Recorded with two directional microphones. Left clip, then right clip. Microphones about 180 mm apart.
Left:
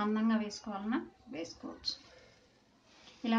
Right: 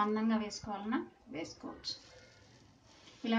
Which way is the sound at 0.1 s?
20° left (ahead or behind).